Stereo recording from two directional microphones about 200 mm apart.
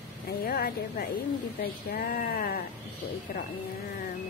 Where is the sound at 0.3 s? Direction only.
50° left (ahead or behind).